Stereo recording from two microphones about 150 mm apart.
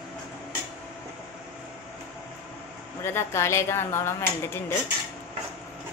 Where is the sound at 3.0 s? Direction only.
15° left (ahead or behind).